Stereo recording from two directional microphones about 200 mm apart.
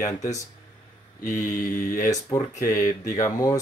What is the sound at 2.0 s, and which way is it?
Speech, 15° left (ahead or behind).